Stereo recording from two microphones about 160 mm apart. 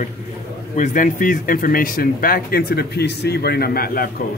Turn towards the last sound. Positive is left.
turn(degrees=70)  # may be behind; listen again after turning